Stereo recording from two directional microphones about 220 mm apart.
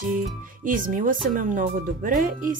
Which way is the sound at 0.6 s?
35° right (ahead or behind).